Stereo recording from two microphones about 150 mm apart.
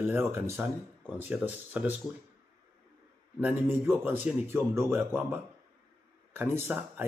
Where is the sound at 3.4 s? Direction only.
15° right (ahead or behind).